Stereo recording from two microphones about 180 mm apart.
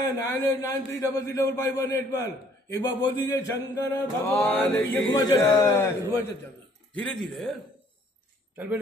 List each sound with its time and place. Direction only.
0.0 s a man's voice: 20° left (ahead or behind)
2.7 s chant: 20° left (ahead or behind)
4.4 s a man's voice: 5° left (ahead or behind)
4.9 s chant: 20° left (ahead or behind)
6.9 s speech: 5° left (ahead or behind)